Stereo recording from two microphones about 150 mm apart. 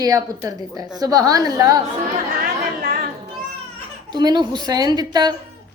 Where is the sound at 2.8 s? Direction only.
70° right (ahead or behind).